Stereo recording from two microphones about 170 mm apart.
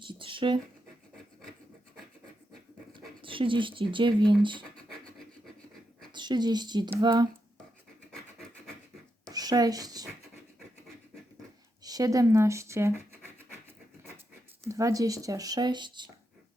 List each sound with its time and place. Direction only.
0.0 s speech: 30° right (ahead or behind)
3.2 s speech: 30° right (ahead or behind)
6.1 s speech: 25° right (ahead or behind)
9.3 s speech: 20° right (ahead or behind)
11.8 s speech: 20° right (ahead or behind)
14.7 s speech: 20° right (ahead or behind)